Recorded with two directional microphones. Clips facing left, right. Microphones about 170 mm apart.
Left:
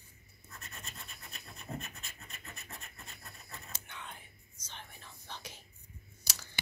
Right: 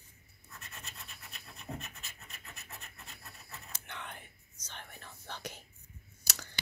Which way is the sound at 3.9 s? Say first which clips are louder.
Right 5 dB; 65° right (ahead or behind).